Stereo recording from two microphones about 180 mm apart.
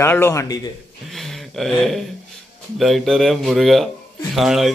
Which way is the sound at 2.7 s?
Centre (ahead or behind).